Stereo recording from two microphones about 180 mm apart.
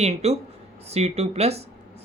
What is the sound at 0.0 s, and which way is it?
Speech, 35° right (ahead or behind).